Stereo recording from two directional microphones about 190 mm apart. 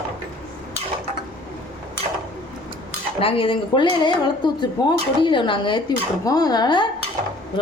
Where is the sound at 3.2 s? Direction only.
30° left (ahead or behind).